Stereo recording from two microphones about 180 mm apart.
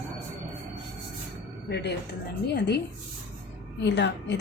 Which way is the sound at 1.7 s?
70° left (ahead or behind).